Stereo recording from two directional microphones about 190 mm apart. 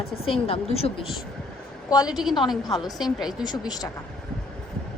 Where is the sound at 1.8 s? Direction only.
20° left (ahead or behind).